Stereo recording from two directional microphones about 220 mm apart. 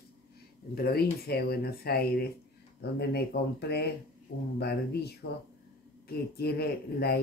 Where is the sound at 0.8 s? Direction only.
45° left (ahead or behind).